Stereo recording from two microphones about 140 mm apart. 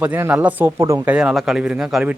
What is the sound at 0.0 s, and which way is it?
Speech, 10° right (ahead or behind).